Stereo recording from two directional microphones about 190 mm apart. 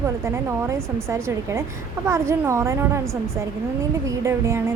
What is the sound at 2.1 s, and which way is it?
Speech, 15° right (ahead or behind).